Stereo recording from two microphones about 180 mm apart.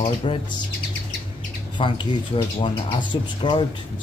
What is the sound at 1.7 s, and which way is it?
Speech, 25° left (ahead or behind).